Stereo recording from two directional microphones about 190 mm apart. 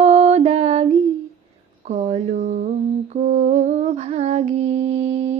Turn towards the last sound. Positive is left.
turn(degrees=-35)  # may be behind; listen again after turning